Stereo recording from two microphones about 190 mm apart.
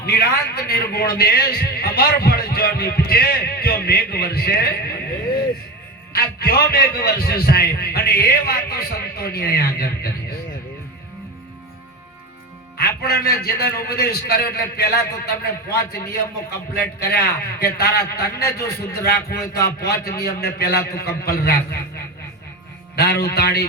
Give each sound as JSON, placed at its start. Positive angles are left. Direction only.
{"t": 0.0, "sound": "a man's voice", "side_deg": 55}
{"t": 6.1, "sound": "a man's voice", "side_deg": 55}
{"t": 12.7, "sound": "a man's voice", "side_deg": 55}
{"t": 23.0, "sound": "a man's voice", "side_deg": 55}